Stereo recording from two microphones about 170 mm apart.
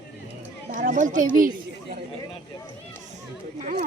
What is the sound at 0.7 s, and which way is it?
Speech, 45° right (ahead or behind).